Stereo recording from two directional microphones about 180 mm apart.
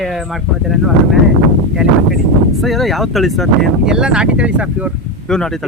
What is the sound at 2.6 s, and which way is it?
Speech, centre (ahead or behind).